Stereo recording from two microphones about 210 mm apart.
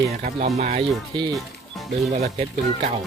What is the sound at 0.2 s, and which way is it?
Speech, 30° right (ahead or behind).